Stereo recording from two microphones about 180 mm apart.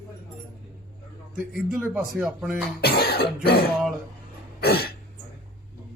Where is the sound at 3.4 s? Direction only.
60° left (ahead or behind).